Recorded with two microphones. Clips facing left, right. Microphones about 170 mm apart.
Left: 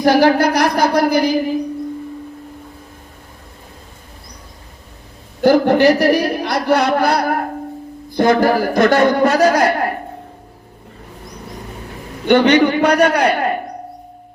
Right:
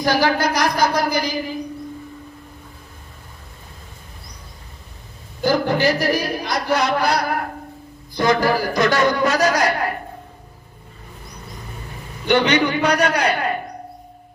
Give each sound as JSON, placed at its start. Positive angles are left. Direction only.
{"t": 0.0, "sound": "a man's voice", "side_deg": 60}
{"t": 5.4, "sound": "a man's voice", "side_deg": 65}
{"t": 12.3, "sound": "a man's voice", "side_deg": 50}